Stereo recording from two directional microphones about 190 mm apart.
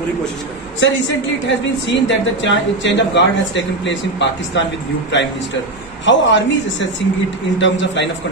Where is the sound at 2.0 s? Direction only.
75° left (ahead or behind).